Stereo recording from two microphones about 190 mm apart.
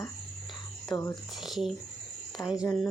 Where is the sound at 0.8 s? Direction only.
15° left (ahead or behind).